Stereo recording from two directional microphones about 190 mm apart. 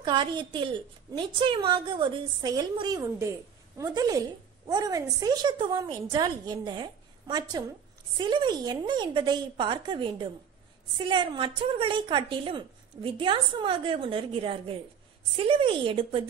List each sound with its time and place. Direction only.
0.0 s a woman's voice: 25° right (ahead or behind)